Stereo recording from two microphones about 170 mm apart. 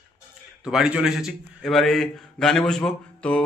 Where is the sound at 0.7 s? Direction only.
5° right (ahead or behind).